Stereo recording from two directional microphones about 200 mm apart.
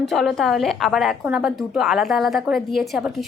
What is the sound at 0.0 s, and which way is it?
A woman's voice, centre (ahead or behind).